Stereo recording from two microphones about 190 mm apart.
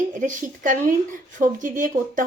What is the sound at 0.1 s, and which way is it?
Speech, 40° right (ahead or behind).